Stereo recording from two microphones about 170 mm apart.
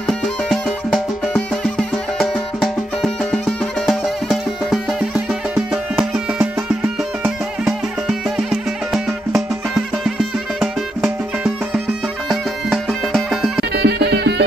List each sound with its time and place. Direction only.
0.5 s music: centre (ahead or behind)
10.6 s music: 5° right (ahead or behind)
13.8 s music: 85° right